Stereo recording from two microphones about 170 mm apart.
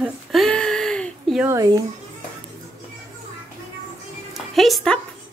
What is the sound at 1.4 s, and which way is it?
Speech, 20° right (ahead or behind).